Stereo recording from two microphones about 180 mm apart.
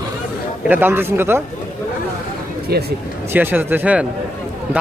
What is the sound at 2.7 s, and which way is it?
Speech, 60° right (ahead or behind).